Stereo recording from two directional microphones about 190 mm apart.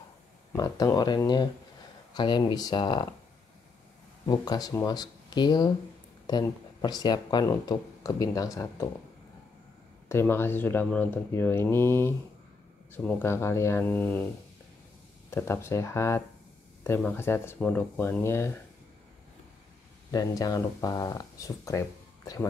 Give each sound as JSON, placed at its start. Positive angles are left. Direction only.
{"t": 0.5, "sound": "speech", "side_deg": 20}
{"t": 4.3, "sound": "speech", "side_deg": 20}
{"t": 10.0, "sound": "speech", "side_deg": 10}
{"t": 15.3, "sound": "speech", "side_deg": 15}
{"t": 20.1, "sound": "speech", "side_deg": 20}